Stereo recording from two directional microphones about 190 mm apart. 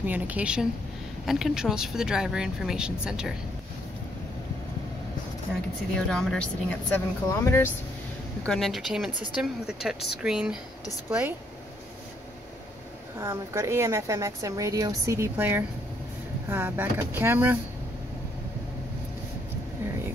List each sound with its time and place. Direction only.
0.0 s a woman's voice: 10° right (ahead or behind)
5.9 s speech: 5° left (ahead or behind)
8.5 s a woman's voice: centre (ahead or behind)
13.2 s a woman's voice: 15° right (ahead or behind)